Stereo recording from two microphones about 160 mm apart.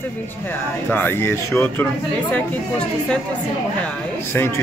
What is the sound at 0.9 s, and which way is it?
Speech, 15° left (ahead or behind).